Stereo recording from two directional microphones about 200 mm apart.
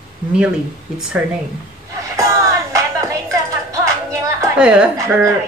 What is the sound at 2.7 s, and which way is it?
Music, 15° right (ahead or behind).